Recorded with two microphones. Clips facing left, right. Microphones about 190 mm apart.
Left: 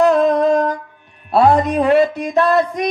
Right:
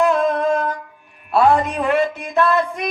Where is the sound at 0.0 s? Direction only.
40° left (ahead or behind).